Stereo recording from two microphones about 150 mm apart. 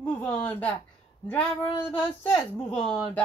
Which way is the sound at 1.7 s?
35° left (ahead or behind).